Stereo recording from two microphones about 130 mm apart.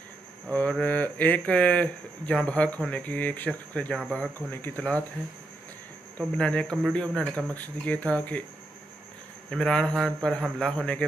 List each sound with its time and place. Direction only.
0.5 s speech: 10° left (ahead or behind)
6.3 s speech: 5° left (ahead or behind)
9.5 s a man's voice: 5° left (ahead or behind)